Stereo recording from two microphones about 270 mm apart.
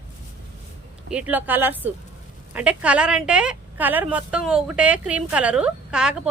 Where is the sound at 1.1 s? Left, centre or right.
Centre.